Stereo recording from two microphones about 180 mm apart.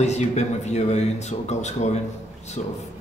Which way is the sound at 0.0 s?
40° left (ahead or behind).